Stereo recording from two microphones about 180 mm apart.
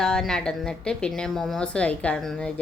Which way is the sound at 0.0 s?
5° left (ahead or behind).